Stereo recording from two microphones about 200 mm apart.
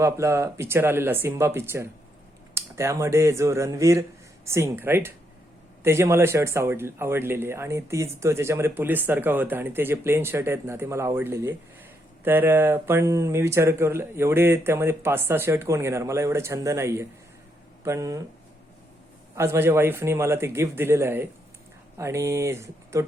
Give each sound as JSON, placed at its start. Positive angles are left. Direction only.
{"t": 0.0, "sound": "speech", "side_deg": -15}
{"t": 19.4, "sound": "speech", "side_deg": -15}